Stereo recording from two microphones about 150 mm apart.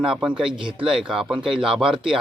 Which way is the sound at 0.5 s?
35° right (ahead or behind).